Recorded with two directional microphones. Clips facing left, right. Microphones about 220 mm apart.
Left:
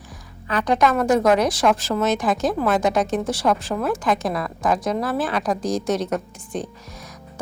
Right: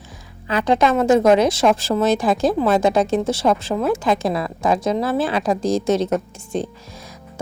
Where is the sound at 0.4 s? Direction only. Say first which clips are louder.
Right 2 dB; 25° right (ahead or behind).